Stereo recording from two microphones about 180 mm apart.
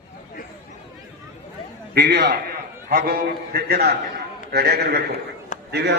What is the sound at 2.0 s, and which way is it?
A man's voice, 65° right (ahead or behind).